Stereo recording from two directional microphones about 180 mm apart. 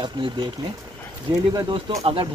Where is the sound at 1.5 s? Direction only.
25° right (ahead or behind).